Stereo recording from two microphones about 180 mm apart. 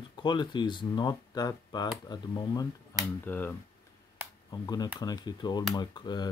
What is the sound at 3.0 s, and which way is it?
Speech, 10° left (ahead or behind).